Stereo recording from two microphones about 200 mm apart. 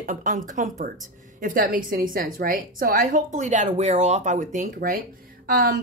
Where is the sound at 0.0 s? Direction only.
40° right (ahead or behind).